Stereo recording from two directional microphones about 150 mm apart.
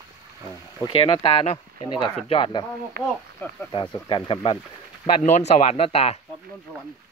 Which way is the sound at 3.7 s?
35° left (ahead or behind).